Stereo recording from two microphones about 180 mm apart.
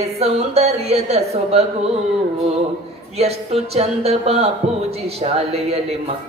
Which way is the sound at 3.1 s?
35° right (ahead or behind).